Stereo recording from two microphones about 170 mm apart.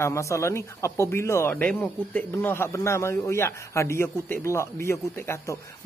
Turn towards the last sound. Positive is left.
turn(degrees=15)  # may be behind; listen again after turning